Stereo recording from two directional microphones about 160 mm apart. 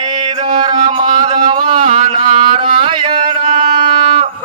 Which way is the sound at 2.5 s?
35° right (ahead or behind).